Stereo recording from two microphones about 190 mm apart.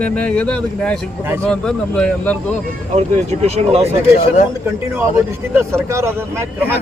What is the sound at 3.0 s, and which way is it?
Speech, 35° right (ahead or behind).